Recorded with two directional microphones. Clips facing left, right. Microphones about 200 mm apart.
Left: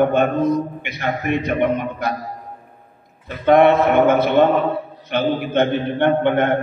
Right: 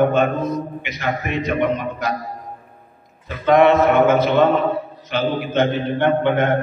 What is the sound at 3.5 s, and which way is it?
A man's voice, 55° left (ahead or behind).